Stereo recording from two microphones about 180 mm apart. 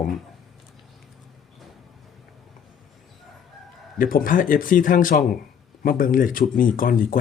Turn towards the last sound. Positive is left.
turn(degrees=50)  # may be behind; listen again after turning